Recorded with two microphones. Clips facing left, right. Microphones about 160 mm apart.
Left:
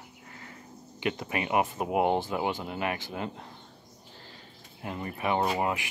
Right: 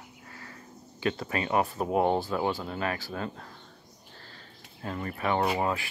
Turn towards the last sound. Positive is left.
turn(degrees=15)  # may be behind; listen again after turning